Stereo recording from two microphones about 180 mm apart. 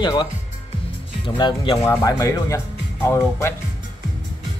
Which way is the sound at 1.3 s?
25° left (ahead or behind).